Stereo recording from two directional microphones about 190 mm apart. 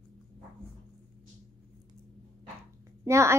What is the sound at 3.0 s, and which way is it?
Speech, 15° right (ahead or behind).